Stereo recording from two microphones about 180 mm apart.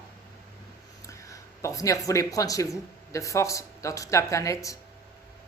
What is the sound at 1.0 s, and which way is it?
Speech, 15° left (ahead or behind).